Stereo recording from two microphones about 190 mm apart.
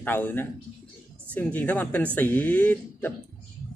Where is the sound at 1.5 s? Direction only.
10° left (ahead or behind).